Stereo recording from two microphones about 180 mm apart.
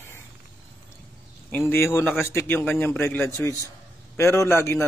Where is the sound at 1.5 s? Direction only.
10° left (ahead or behind).